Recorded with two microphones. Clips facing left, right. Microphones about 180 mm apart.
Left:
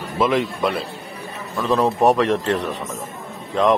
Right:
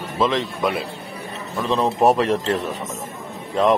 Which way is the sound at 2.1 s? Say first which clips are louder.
Even; 30° right (ahead or behind).